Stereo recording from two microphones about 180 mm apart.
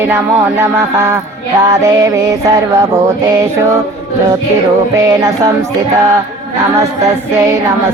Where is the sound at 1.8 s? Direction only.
20° right (ahead or behind).